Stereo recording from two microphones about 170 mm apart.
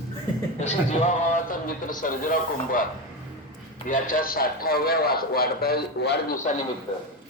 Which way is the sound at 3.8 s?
50° left (ahead or behind).